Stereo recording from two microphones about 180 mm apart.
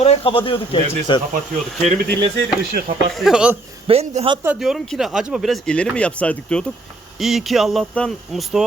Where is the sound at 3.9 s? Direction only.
35° right (ahead or behind).